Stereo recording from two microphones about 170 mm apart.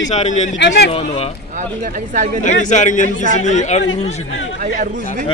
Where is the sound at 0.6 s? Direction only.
85° left.